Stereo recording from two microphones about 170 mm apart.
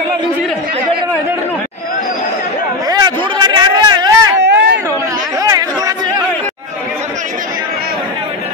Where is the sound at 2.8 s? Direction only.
25° right (ahead or behind).